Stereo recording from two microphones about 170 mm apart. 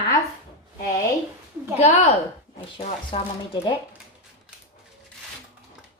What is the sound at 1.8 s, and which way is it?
Speech, 40° left (ahead or behind).